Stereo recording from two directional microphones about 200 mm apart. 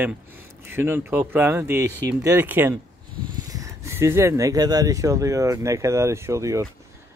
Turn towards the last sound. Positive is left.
turn(degrees=-15)  # may be behind; listen again after turning